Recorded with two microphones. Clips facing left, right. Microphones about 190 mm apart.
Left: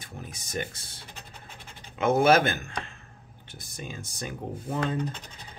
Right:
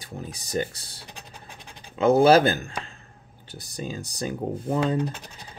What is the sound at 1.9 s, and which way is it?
Speech, 35° right (ahead or behind).